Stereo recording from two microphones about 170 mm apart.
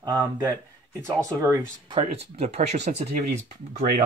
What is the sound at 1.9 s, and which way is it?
Speech, 35° right (ahead or behind).